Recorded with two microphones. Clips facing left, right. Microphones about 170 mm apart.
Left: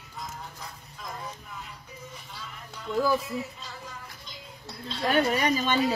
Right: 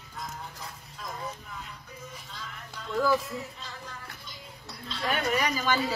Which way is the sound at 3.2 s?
10° left (ahead or behind).